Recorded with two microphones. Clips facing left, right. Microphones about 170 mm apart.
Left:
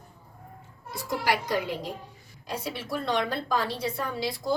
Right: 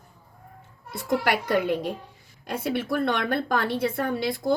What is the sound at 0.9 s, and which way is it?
A woman's voice, 55° right (ahead or behind).